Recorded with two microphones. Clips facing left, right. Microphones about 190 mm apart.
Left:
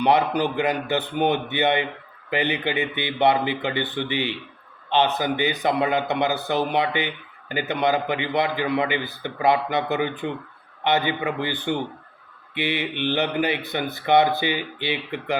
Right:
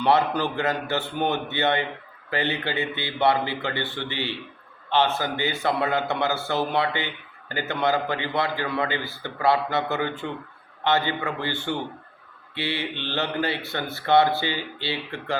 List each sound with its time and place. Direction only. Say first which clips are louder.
0.0 s a man's voice: left 2 dB; 15° left (ahead or behind)